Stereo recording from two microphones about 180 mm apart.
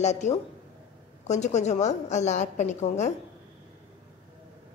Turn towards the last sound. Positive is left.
turn(degrees=40)  # may be behind; listen again after turning